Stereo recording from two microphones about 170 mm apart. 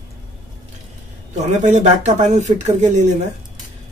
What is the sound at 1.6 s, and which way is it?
Speech, 45° right (ahead or behind).